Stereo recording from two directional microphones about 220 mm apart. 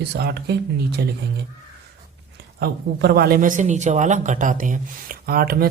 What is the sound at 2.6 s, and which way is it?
Speech, 45° right (ahead or behind).